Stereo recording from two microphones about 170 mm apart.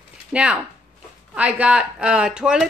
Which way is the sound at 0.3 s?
5° right (ahead or behind).